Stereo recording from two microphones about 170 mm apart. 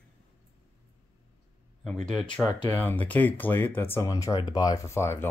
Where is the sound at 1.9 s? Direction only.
5° left (ahead or behind).